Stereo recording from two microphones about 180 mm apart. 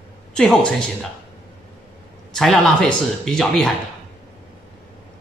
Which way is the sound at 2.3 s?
Centre (ahead or behind).